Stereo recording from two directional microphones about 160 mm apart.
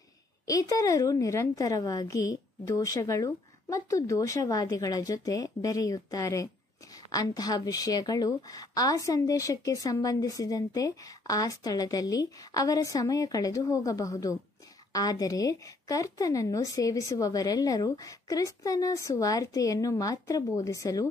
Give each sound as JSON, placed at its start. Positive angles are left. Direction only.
{"t": 0.5, "sound": "a woman's voice", "side_deg": 20}